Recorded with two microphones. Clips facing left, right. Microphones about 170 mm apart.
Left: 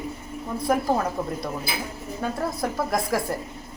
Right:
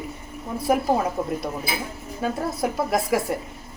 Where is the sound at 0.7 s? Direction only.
10° right (ahead or behind).